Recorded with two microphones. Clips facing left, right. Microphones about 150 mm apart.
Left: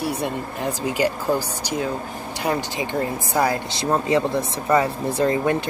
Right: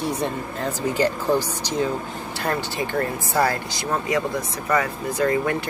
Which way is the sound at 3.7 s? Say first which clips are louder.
Left 4 dB; 25° left (ahead or behind).